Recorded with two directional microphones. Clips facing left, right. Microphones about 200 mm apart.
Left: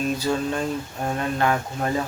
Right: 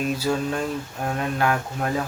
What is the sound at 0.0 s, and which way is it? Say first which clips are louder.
Speech: even; 5° right (ahead or behind).